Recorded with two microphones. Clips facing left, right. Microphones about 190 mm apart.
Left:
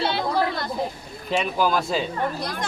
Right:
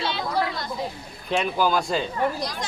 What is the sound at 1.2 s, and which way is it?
Speech, centre (ahead or behind).